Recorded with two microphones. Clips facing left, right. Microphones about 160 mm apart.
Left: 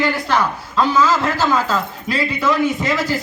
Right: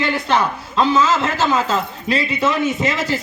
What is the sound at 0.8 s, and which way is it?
A man's voice, 25° right (ahead or behind).